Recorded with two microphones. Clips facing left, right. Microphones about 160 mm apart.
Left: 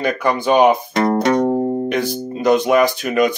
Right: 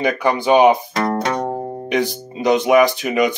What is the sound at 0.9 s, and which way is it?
Music, 20° left (ahead or behind).